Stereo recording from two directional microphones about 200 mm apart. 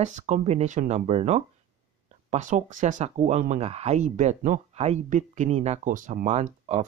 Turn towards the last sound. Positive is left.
turn(degrees=-35)  # may be behind; listen again after turning